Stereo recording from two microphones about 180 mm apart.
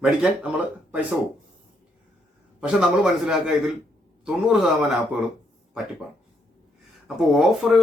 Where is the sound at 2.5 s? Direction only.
5° right (ahead or behind).